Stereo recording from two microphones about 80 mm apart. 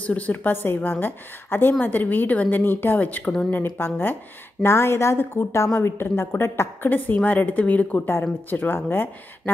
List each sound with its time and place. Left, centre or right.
0.0 s a woman's voice: centre
3.3 s speech: centre
3.5 s a woman's voice: left